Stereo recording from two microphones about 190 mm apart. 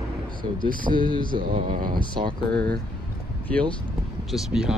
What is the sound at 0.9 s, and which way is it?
Speech, 25° right (ahead or behind).